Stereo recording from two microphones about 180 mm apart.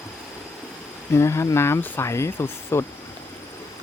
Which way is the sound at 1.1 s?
15° left (ahead or behind).